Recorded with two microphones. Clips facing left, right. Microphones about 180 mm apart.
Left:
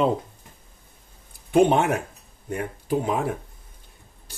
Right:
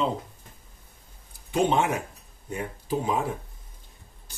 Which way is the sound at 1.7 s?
60° left (ahead or behind).